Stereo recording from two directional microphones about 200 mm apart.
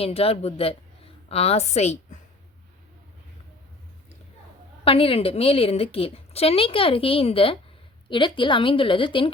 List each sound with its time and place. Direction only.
0.0 s a woman's voice: 30° left (ahead or behind)
4.9 s a woman's voice: 25° left (ahead or behind)